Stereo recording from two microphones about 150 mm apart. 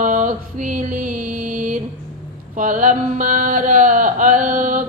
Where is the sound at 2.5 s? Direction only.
60° right (ahead or behind).